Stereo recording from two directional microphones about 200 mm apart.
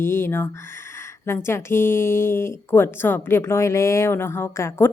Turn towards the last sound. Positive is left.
turn(degrees=10)  # may be behind; listen again after turning